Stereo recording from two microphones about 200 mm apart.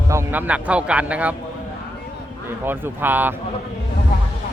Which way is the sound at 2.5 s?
10° right (ahead or behind).